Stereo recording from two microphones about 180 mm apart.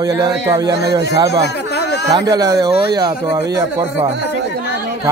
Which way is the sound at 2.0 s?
20° right (ahead or behind).